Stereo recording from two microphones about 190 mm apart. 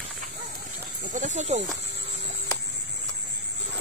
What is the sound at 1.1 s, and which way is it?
Speech, 40° right (ahead or behind).